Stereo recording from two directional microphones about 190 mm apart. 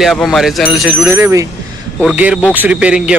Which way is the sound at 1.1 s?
15° right (ahead or behind).